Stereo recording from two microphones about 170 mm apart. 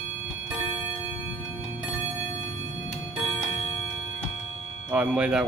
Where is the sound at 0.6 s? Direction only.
30° left (ahead or behind).